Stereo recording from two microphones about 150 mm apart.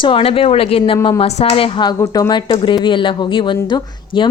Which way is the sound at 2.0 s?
25° left (ahead or behind).